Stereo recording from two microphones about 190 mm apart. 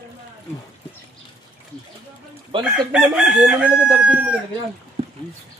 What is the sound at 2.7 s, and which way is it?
Chicken, 5° right (ahead or behind).